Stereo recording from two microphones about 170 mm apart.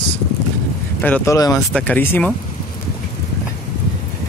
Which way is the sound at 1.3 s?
20° left (ahead or behind).